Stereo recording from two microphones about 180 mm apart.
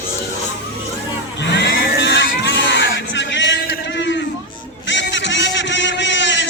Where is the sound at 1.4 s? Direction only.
70° left (ahead or behind).